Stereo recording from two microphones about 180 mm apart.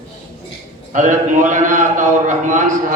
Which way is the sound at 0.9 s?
45° right (ahead or behind).